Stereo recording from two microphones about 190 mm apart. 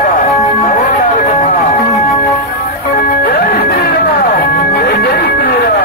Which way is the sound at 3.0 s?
50° left (ahead or behind).